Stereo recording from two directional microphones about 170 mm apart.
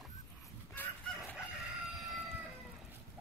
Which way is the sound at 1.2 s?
5° right (ahead or behind).